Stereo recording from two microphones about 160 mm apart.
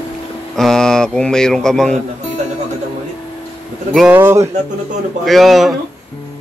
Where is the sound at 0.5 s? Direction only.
5° left (ahead or behind).